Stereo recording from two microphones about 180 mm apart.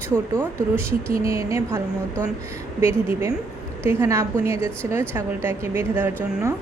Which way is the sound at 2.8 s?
15° right (ahead or behind).